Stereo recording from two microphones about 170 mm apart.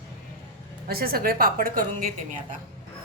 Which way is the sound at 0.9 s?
60° right (ahead or behind).